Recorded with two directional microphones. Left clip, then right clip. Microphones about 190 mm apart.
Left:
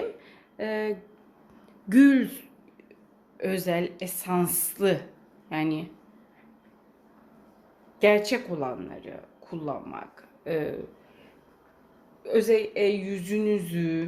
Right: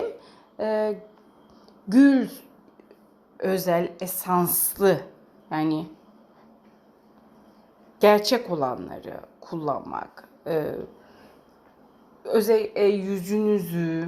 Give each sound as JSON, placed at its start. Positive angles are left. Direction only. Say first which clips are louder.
{"t": 0.2, "sound": "a sound", "louder": "right 5 dB", "side_deg": -10}
{"t": 1.9, "sound": "speech", "louder": "right 1 dB", "side_deg": 5}
{"t": 3.3, "sound": "a woman's voice", "louder": "right 5 dB", "side_deg": -10}
{"t": 8.3, "sound": "a woman's voice", "louder": "right 5 dB", "side_deg": -15}
{"t": 12.2, "sound": "a woman's voice", "louder": "right 2 dB", "side_deg": -10}